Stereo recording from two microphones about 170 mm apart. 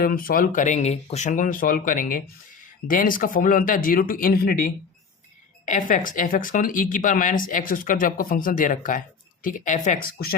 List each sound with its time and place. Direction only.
0.0 s speech: 60° left (ahead or behind)